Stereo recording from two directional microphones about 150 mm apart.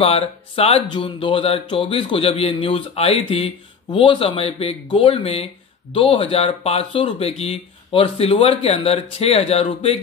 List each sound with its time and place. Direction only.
0.0 s speech: 40° left (ahead or behind)